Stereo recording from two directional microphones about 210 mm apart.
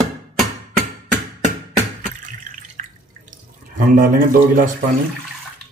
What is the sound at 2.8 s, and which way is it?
Drip, 35° right (ahead or behind).